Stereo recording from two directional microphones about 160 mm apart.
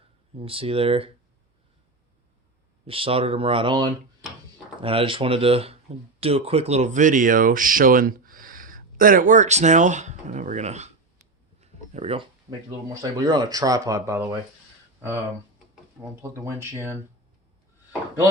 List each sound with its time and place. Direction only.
0.3 s speech: 35° right (ahead or behind)
2.8 s speech: 35° right (ahead or behind)
12.5 s speech: 20° right (ahead or behind)
16.3 s speech: 15° right (ahead or behind)